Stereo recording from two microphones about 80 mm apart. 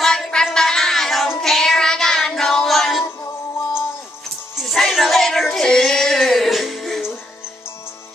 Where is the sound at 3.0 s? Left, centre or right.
Left.